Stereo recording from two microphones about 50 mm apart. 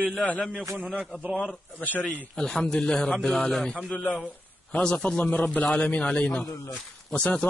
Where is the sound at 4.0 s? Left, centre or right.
Left.